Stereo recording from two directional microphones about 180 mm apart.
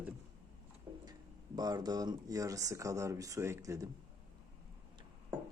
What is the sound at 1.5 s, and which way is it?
Speech, 20° right (ahead or behind).